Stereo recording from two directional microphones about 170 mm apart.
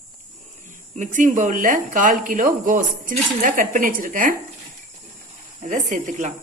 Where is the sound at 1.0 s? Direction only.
50° right (ahead or behind).